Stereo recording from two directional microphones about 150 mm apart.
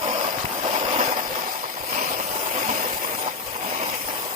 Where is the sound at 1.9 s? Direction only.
60° right (ahead or behind).